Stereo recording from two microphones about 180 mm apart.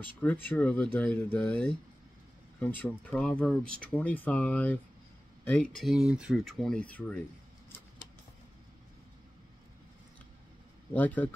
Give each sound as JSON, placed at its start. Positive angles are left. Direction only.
{"t": 0.2, "sound": "speech", "side_deg": 10}
{"t": 10.9, "sound": "speech", "side_deg": 10}